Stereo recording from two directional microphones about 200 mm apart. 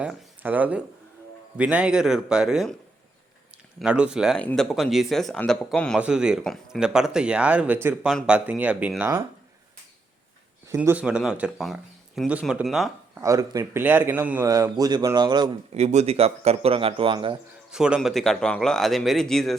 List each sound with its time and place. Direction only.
0.0 s speech: 5° right (ahead or behind)
3.8 s a man's voice: 5° right (ahead or behind)
10.7 s speech: 10° right (ahead or behind)
13.2 s a man's voice: 15° right (ahead or behind)
15.7 s a man's voice: 35° right (ahead or behind)
17.7 s speech: 5° right (ahead or behind)